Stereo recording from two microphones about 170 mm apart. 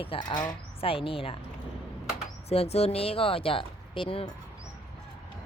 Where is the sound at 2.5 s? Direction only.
35° left (ahead or behind).